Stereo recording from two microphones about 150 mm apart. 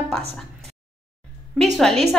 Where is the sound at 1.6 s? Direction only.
Centre (ahead or behind).